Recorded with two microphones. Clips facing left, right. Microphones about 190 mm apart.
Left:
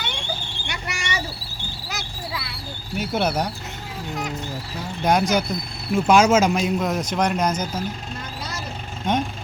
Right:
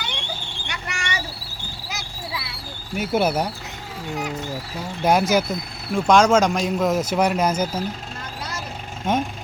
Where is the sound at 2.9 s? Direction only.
5° right (ahead or behind).